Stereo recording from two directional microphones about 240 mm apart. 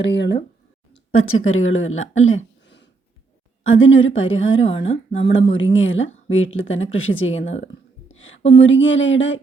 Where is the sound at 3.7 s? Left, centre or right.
Left.